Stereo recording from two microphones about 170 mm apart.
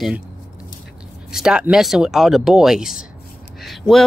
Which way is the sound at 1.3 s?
5° right (ahead or behind).